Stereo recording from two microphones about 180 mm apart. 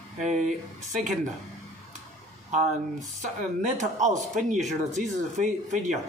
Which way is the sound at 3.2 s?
45° right (ahead or behind).